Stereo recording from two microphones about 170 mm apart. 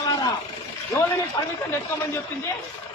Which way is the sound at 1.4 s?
20° left (ahead or behind).